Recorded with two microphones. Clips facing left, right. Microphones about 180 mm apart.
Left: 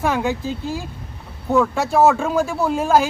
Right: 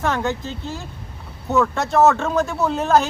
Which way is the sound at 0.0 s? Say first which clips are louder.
Left 2 dB; 10° left (ahead or behind).